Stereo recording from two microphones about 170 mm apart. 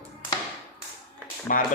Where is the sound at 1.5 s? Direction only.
50° left (ahead or behind).